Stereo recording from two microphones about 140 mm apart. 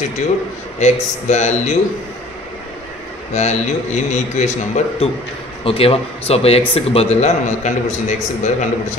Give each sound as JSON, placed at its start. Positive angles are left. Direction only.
{"t": 0.7, "sound": "a man's voice", "side_deg": 55}
{"t": 3.3, "sound": "a man's voice", "side_deg": 55}